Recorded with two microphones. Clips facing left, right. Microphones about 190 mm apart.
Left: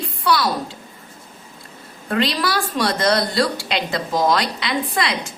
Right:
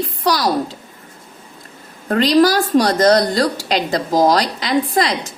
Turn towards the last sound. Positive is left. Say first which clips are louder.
# right 5 dB
turn(degrees=-35)  # may be behind; listen again after turning